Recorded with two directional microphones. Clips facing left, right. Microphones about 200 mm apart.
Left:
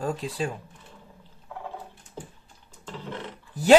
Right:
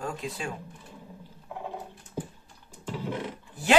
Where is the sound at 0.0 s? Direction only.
35° left (ahead or behind).